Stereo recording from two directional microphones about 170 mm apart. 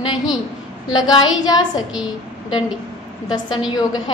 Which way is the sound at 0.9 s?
25° left (ahead or behind).